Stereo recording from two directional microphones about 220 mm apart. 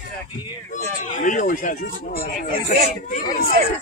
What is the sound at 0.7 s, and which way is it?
Speech, 35° left (ahead or behind).